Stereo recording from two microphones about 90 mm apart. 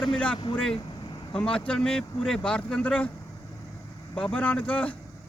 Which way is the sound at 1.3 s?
10° left (ahead or behind).